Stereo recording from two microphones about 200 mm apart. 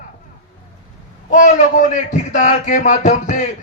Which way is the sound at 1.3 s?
40° left (ahead or behind).